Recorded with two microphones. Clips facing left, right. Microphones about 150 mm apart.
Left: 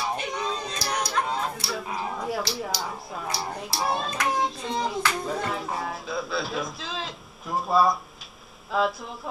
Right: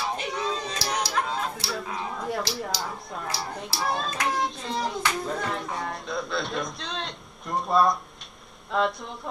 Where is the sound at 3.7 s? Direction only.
20° left (ahead or behind).